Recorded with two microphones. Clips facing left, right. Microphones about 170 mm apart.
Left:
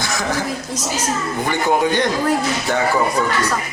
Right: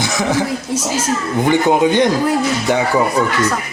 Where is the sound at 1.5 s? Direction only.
20° right (ahead or behind).